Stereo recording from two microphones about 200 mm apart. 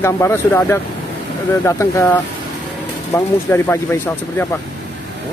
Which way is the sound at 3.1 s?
10° left (ahead or behind).